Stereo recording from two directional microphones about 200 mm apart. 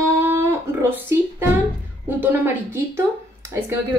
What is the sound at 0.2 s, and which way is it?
Guitar, 15° right (ahead or behind).